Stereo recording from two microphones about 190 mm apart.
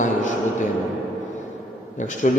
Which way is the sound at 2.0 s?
40° left (ahead or behind).